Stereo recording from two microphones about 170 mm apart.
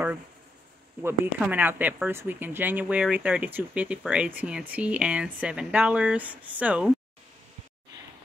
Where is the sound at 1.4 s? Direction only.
10° right (ahead or behind).